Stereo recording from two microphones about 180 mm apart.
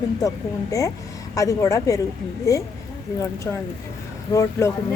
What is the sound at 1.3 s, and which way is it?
Speech, 20° left (ahead or behind).